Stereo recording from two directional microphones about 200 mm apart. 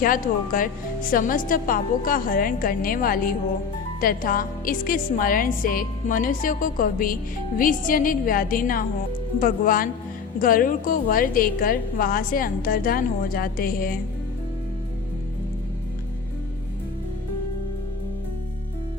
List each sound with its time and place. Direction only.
0.0 s a woman's voice: 45° left (ahead or behind)